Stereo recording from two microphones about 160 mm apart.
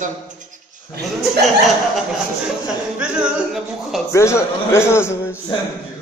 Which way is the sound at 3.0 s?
5° right (ahead or behind).